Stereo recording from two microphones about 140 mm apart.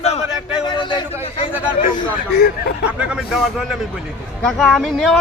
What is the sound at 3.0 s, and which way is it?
Speech, centre (ahead or behind).